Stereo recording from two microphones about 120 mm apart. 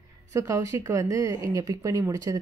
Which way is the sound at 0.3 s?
25° right (ahead or behind).